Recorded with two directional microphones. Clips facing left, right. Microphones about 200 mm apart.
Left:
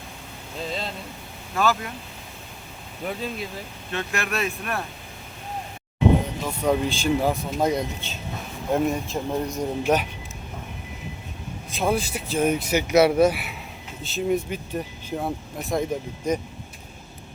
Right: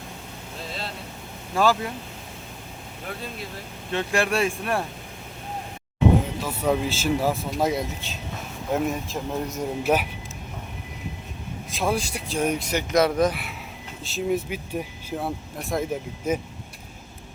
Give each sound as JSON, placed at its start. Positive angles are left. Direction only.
{"t": 1.5, "sound": "speech", "side_deg": -30}
{"t": 3.9, "sound": "speech", "side_deg": -30}
{"t": 6.4, "sound": "speech", "side_deg": -5}
{"t": 11.7, "sound": "speech", "side_deg": 0}